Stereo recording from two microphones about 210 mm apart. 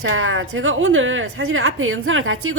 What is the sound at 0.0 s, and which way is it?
A woman's voice, 70° right (ahead or behind).